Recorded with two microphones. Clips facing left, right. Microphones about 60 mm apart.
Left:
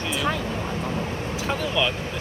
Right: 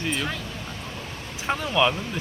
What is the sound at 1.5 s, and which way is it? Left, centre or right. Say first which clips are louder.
Speech: right 3 dB; centre.